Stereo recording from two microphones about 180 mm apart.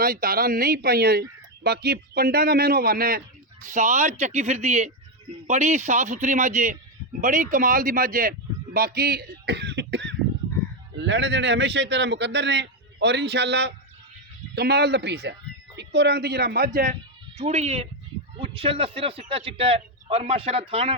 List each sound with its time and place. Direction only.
0.0 s a man's voice: 55° right (ahead or behind)
17.3 s speech: 35° right (ahead or behind)